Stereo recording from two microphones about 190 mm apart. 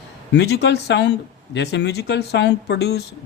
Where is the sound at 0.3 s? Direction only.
60° left (ahead or behind).